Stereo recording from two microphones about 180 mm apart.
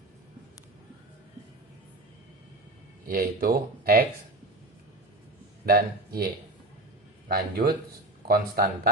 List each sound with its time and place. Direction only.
3.1 s speech: 55° right (ahead or behind)
5.6 s speech: 55° right (ahead or behind)
7.3 s speech: 60° right (ahead or behind)